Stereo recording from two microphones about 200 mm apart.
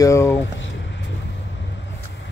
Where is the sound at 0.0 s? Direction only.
15° left (ahead or behind).